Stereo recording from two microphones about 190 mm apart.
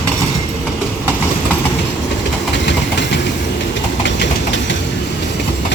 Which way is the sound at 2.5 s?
65° left (ahead or behind).